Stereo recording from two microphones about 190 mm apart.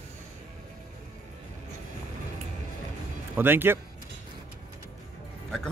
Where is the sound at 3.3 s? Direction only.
10° right (ahead or behind).